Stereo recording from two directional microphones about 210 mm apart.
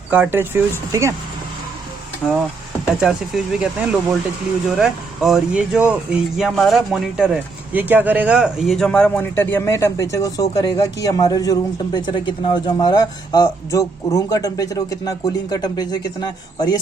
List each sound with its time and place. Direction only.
0.1 s speech: 10° right (ahead or behind)
2.2 s speech: 5° left (ahead or behind)